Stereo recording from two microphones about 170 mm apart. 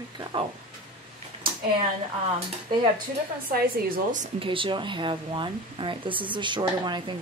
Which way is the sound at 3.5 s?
60° right (ahead or behind).